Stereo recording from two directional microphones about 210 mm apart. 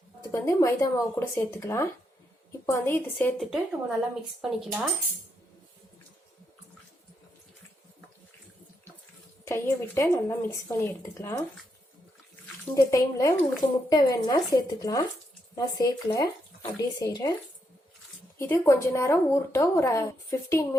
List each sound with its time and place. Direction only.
0.2 s speech: 15° left (ahead or behind); by 4.8 s 5° right (ahead or behind)
9.4 s speech: 15° left (ahead or behind)
12.7 s speech: 15° left (ahead or behind)
18.3 s speech: 10° left (ahead or behind)